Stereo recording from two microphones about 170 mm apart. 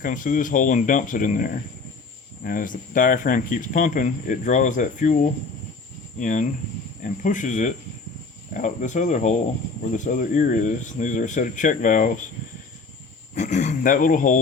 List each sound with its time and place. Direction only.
0.0 s speech: 50° left (ahead or behind)
13.3 s speech: 45° left (ahead or behind)